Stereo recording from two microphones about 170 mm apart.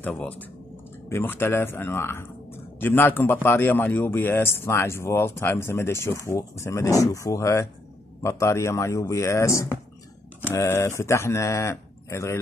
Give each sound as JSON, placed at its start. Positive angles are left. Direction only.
{"t": 0.0, "sound": "speech", "side_deg": 10}